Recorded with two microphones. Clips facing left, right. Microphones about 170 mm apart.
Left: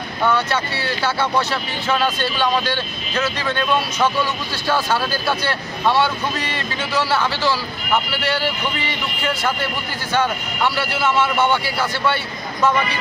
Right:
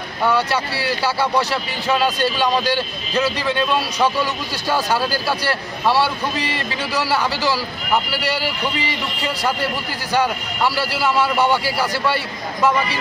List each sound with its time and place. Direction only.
0.2 s a man's voice: 5° right (ahead or behind)
3.2 s a man's voice: 10° right (ahead or behind)
10.8 s a man's voice: 35° right (ahead or behind)